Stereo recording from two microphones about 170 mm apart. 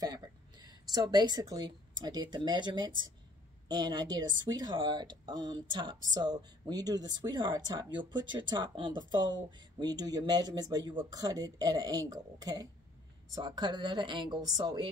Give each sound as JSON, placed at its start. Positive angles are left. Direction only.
{"t": 0.0, "sound": "a woman's voice", "side_deg": -25}